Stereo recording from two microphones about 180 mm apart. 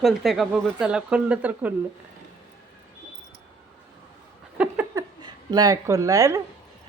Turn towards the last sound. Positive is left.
turn(degrees=-20)  # may be behind; listen again after turning